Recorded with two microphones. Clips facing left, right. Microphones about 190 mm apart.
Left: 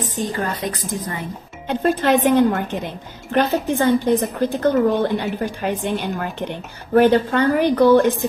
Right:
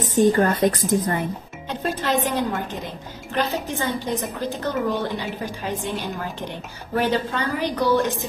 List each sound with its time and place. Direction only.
0.0 s a woman's voice: 50° right (ahead or behind)
1.7 s a woman's voice: 55° left (ahead or behind)
7.0 s a woman's voice: 55° left (ahead or behind)